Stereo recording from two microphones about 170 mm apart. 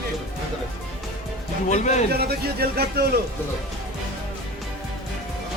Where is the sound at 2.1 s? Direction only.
65° right (ahead or behind).